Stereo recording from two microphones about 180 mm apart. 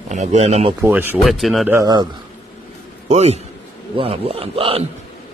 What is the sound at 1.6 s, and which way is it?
Speech, 15° right (ahead or behind).